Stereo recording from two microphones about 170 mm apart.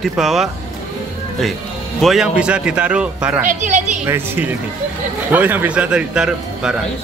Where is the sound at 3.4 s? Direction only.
45° right (ahead or behind).